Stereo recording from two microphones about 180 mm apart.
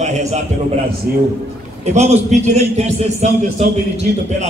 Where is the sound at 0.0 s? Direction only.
40° right (ahead or behind).